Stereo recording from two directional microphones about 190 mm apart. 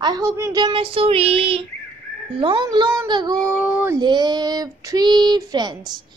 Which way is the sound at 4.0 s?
25° right (ahead or behind).